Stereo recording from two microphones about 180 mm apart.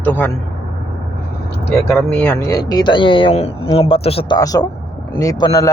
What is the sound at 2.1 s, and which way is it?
Speech, 10° left (ahead or behind).